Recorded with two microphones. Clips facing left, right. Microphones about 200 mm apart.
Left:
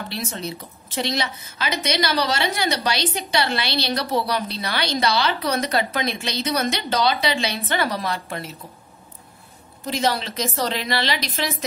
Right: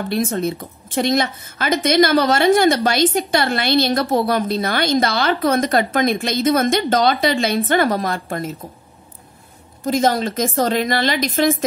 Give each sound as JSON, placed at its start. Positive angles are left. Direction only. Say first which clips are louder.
{"t": 0.1, "sound": "a woman's voice", "louder": "right 10 dB", "side_deg": -50}
{"t": 9.8, "sound": "a woman's voice", "louder": "right 6 dB", "side_deg": -45}